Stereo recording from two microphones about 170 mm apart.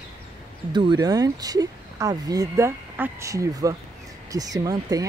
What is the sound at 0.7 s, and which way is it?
Speech, 25° right (ahead or behind).